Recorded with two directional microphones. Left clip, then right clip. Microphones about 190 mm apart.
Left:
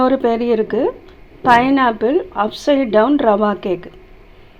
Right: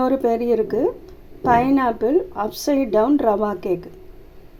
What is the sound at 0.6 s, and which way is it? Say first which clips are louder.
Speech: left 3 dB; 10° right (ahead or behind).